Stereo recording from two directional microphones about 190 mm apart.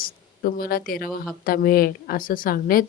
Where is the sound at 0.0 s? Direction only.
50° left (ahead or behind).